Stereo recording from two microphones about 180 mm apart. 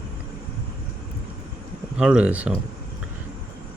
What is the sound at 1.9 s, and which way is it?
Speech, 5° right (ahead or behind).